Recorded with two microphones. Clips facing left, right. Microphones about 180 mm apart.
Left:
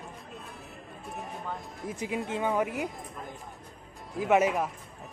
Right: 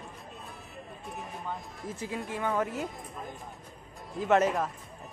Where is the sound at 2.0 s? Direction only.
20° left (ahead or behind).